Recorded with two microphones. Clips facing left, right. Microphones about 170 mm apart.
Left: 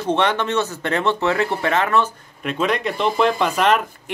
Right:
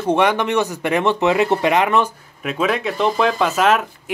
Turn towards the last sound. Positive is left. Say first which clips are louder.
# right 1 dB
turn(degrees=-5)  # may be behind; listen again after turning